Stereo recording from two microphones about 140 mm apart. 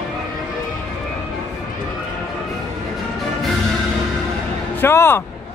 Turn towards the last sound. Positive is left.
turn(degrees=15)  # may be behind; listen again after turning